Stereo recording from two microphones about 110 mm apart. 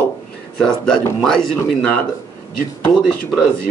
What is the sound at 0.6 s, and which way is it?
Speech, 5° left (ahead or behind).